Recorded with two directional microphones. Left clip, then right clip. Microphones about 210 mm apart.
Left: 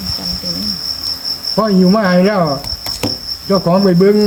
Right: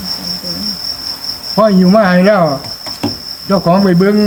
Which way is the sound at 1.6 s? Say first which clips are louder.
Right 5 dB; centre (ahead or behind).